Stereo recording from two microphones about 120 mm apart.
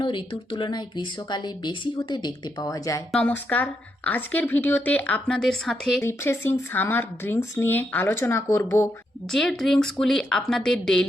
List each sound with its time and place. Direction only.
0.0 s speech: 45° left (ahead or behind)
3.1 s a woman's voice: 10° left (ahead or behind)
6.0 s speech: 20° left (ahead or behind)
9.3 s a woman's voice: 5° left (ahead or behind)